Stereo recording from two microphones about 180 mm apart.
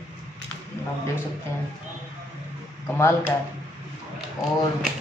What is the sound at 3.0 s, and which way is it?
Speech, 15° left (ahead or behind).